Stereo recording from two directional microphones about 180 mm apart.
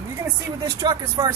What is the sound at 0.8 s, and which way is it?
Speech, 25° right (ahead or behind).